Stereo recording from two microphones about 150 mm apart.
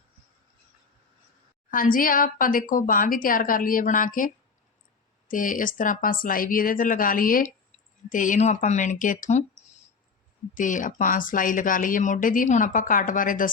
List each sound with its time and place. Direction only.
1.7 s speech: 65° left (ahead or behind)
5.3 s speech: 65° left (ahead or behind)
10.5 s speech: 60° left (ahead or behind)